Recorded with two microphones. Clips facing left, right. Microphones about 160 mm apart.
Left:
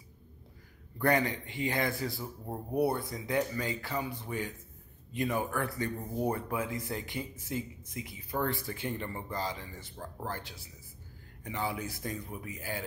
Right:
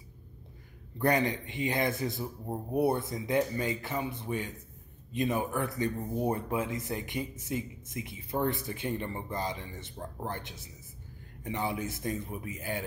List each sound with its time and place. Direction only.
0.9 s speech: 20° right (ahead or behind)